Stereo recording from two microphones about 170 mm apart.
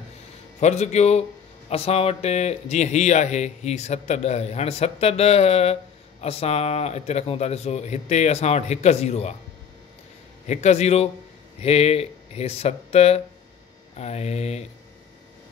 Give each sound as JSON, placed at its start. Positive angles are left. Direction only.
{"t": 0.6, "sound": "a man's voice", "side_deg": 40}
{"t": 10.4, "sound": "a man's voice", "side_deg": 40}